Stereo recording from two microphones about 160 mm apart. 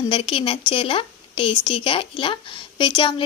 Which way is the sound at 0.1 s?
35° left (ahead or behind).